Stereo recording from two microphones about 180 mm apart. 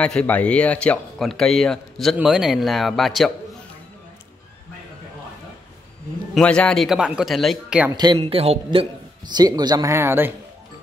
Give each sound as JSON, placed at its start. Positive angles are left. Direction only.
{"t": 0.0, "sound": "speech", "side_deg": 5}
{"t": 6.3, "sound": "speech", "side_deg": 5}
{"t": 7.9, "sound": "a man's voice", "side_deg": -25}